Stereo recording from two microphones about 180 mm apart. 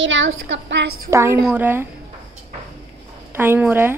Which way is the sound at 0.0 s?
90° right.